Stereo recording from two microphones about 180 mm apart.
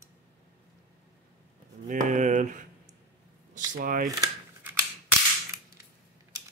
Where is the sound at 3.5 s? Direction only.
50° right (ahead or behind).